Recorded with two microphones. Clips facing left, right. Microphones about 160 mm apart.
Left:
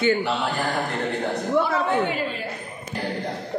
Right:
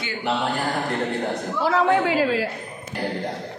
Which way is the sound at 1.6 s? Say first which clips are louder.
Right 3 dB; 90° right.